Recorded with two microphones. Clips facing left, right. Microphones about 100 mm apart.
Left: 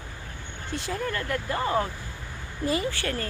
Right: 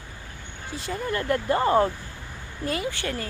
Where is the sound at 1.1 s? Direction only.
25° right (ahead or behind).